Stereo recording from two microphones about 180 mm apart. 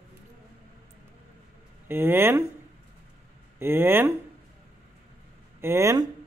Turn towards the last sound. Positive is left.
turn(degrees=-15)  # may be behind; listen again after turning